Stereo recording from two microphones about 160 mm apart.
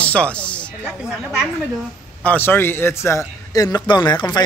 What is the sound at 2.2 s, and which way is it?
A man's voice, 10° left (ahead or behind).